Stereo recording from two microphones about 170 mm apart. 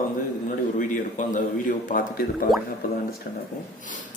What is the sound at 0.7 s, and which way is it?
Speech, 50° left (ahead or behind).